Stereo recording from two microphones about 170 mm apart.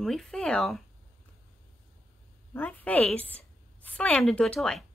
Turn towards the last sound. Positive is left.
turn(degrees=5)  # may be behind; listen again after turning